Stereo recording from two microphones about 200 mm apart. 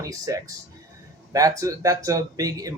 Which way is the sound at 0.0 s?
15° right (ahead or behind).